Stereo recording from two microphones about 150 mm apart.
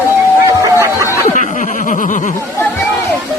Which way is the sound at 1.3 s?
60° left (ahead or behind).